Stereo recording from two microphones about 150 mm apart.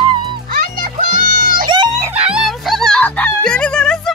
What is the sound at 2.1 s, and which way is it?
Music, 5° right (ahead or behind).